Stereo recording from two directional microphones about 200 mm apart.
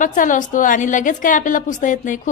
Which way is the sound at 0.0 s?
40° left (ahead or behind).